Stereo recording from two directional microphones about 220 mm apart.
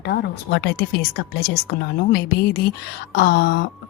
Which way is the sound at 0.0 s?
50° left (ahead or behind).